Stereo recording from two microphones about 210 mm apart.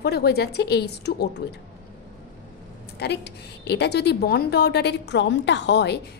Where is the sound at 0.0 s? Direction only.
50° left (ahead or behind).